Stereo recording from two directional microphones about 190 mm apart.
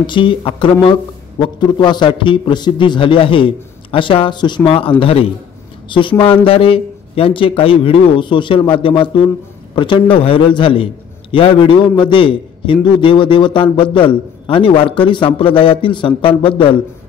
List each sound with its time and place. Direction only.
0.0 s a man's voice: 25° left (ahead or behind)